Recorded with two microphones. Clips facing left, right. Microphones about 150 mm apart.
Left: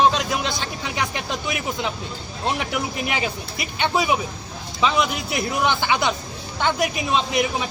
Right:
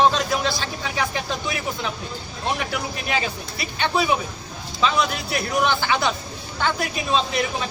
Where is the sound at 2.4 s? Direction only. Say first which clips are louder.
Left 1 dB; 20° left (ahead or behind).